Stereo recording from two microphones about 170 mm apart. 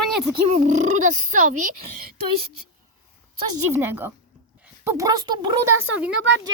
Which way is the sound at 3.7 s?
15° right (ahead or behind).